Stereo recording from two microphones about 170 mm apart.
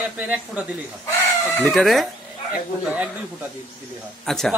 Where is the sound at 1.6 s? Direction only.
Centre (ahead or behind).